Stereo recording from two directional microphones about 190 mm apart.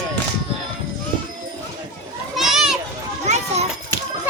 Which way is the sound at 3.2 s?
35° right (ahead or behind).